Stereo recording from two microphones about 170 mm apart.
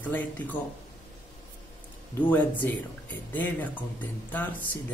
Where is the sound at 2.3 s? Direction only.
10° left (ahead or behind).